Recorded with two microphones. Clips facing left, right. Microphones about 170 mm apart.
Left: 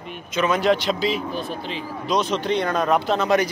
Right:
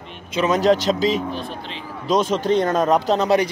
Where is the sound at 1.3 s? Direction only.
5° left (ahead or behind).